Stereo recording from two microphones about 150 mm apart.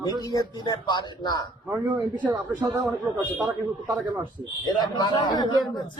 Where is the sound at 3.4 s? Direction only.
25° right (ahead or behind).